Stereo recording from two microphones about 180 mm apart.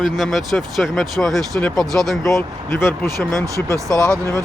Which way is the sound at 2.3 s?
15° left (ahead or behind).